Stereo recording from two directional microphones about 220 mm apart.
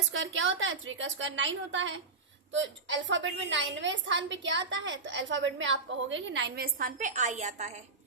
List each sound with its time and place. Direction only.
0.1 s a woman's voice: 60° right (ahead or behind)
6.7 s a woman's voice: 35° right (ahead or behind)